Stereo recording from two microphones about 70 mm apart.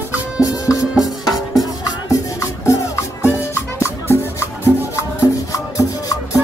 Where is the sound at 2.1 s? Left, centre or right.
Left.